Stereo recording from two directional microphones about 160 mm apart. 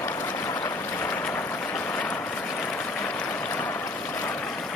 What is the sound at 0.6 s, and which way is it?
Boat, 10° left (ahead or behind).